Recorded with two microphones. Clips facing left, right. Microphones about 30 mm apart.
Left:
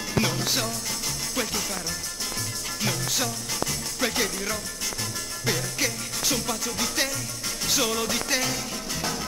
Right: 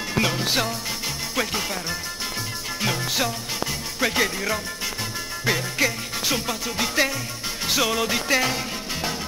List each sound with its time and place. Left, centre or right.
0.1 s music: right